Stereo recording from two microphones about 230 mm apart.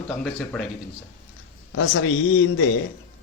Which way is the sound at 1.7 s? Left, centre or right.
Left.